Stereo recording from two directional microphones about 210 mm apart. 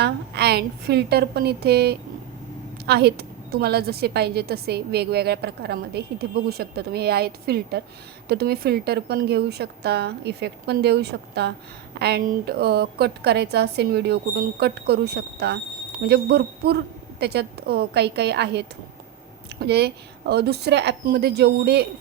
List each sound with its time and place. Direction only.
0.0 s a woman's voice: 50° right (ahead or behind)